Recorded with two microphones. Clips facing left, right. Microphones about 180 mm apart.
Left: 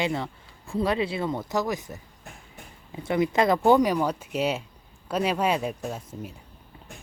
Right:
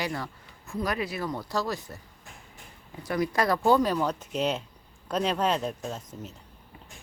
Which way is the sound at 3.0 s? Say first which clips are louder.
Left 4 dB; 25° left (ahead or behind).